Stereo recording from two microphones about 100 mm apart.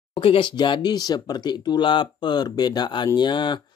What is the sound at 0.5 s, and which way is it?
Speech, 50° left (ahead or behind).